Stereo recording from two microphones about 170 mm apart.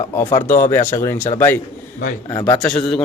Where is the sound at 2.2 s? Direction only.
20° left (ahead or behind).